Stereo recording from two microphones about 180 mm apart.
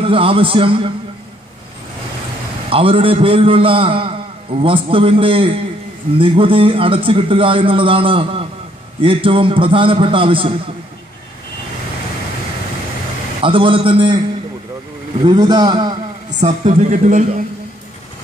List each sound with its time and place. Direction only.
0.0 s a man's voice: 30° right (ahead or behind)
2.7 s a man's voice: 30° right (ahead or behind)
13.4 s a man's voice: 30° right (ahead or behind)
15.2 s a man's voice: 25° right (ahead or behind)
16.3 s speech: 45° right (ahead or behind)